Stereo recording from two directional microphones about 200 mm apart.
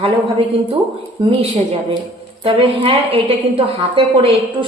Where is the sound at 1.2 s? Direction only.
30° right (ahead or behind).